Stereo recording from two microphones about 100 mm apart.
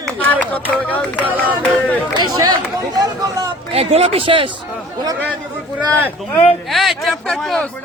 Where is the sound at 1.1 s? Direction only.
15° right (ahead or behind).